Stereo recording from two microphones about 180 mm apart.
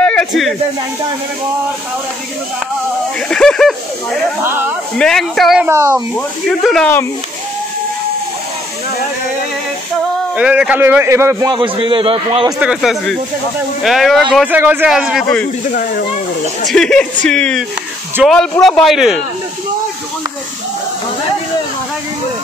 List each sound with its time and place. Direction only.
0.0 s a sound: 5° left (ahead or behind)
3.3 s speech: 5° left (ahead or behind)
4.4 s a man's voice: 10° right (ahead or behind)
4.9 s speech: 5° left (ahead or behind)
5.7 s a man's voice: 15° right (ahead or behind)
6.6 s speech: centre (ahead or behind)
10.3 s a man's voice: 5° right (ahead or behind); by 12.5 s 30° right (ahead or behind)
12.5 s speech: 5° right (ahead or behind)
16.6 s speech: 5° left (ahead or behind)